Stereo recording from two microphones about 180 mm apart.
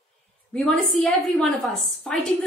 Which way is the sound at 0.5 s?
Centre (ahead or behind).